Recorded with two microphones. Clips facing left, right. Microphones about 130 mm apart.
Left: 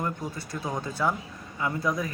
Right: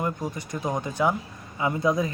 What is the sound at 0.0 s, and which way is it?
Speech, 20° right (ahead or behind).